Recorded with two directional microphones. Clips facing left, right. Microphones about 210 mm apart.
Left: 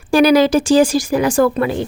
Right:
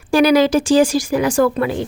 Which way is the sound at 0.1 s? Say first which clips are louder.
Left 1 dB; 35° left (ahead or behind).